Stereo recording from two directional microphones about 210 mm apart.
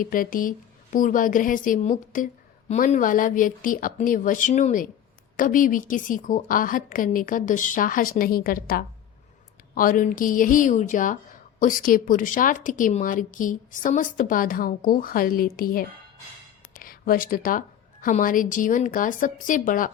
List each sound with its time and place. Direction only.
0.0 s a woman's voice: 40° left (ahead or behind)